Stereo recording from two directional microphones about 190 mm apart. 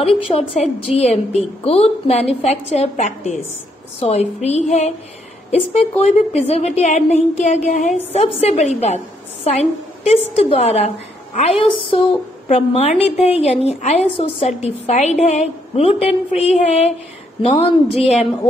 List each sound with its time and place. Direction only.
0.6 s a woman's voice: 35° left (ahead or behind)